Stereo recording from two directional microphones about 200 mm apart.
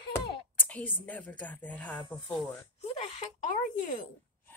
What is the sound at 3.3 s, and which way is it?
Speech, 40° left (ahead or behind).